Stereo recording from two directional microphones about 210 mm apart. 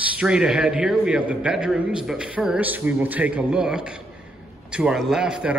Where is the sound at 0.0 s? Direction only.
5° right (ahead or behind).